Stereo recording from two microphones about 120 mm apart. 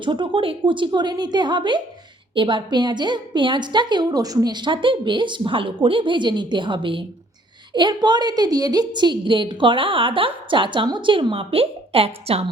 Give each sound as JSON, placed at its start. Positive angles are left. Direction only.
{"t": 0.0, "sound": "a woman's voice", "side_deg": -40}